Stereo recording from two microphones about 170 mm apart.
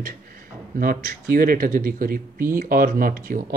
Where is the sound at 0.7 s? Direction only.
60° right (ahead or behind).